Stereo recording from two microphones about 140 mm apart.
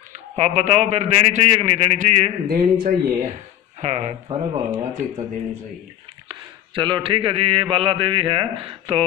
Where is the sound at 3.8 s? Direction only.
50° right (ahead or behind).